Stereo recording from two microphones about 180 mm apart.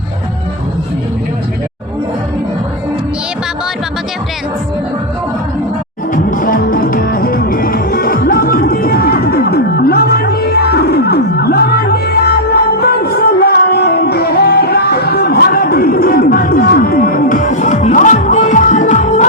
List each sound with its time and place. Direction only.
6.3 s music: 50° left (ahead or behind)